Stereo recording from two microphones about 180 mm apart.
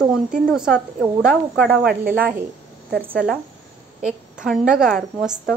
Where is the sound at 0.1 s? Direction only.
5° right (ahead or behind).